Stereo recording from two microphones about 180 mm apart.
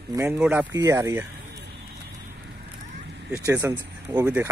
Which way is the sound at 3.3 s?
15° right (ahead or behind).